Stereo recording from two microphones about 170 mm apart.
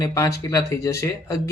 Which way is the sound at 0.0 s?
20° left (ahead or behind).